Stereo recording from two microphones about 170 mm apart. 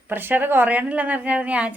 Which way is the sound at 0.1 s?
10° right (ahead or behind).